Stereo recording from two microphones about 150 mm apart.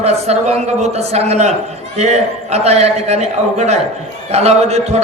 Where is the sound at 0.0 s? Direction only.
45° right (ahead or behind).